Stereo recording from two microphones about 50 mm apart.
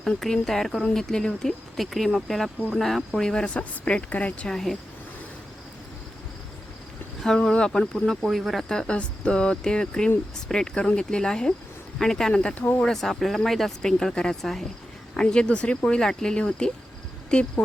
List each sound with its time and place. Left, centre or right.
0.2 s speech: centre
3.6 s cricket: left
4.4 s speech: centre
7.3 s cricket: centre
7.7 s speech: centre
8.7 s speech: centre
9.0 s cricket: centre
10.5 s speech: centre
12.5 s speech: left
12.8 s speech: centre
15.1 s cricket: centre
15.9 s speech: centre